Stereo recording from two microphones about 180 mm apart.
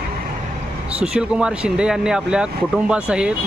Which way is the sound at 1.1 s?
5° right (ahead or behind).